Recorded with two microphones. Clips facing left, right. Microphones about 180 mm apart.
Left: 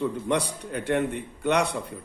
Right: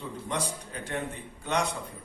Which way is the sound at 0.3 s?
65° left (ahead or behind).